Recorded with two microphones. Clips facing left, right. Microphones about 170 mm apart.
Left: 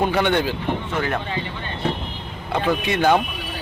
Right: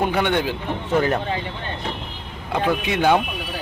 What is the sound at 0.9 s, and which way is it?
Speech, 40° right (ahead or behind).